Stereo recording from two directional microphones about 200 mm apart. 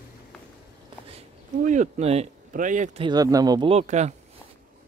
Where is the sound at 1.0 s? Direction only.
35° right (ahead or behind).